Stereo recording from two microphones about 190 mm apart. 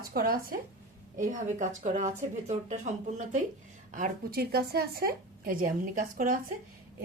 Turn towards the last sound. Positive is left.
turn(degrees=-45)  # may be behind; listen again after turning